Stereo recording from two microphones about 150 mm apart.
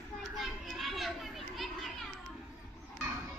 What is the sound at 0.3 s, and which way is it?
Children playing, centre (ahead or behind).